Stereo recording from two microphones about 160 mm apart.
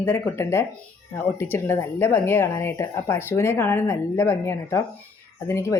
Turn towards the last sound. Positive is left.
turn(degrees=15)  # may be behind; listen again after turning